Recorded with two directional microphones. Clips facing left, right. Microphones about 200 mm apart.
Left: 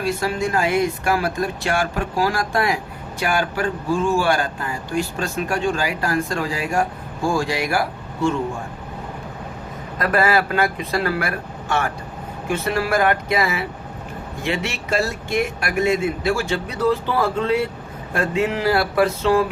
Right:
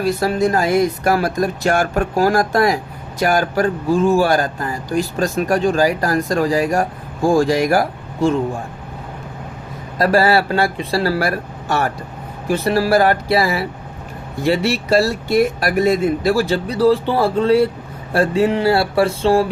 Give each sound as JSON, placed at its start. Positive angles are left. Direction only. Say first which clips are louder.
{"t": 0.0, "sound": "speech", "louder": "right 5 dB", "side_deg": -40}
{"t": 10.0, "sound": "speech", "louder": "right 4 dB", "side_deg": -30}